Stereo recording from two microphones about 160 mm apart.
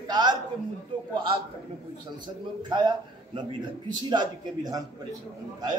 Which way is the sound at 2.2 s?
30° right (ahead or behind).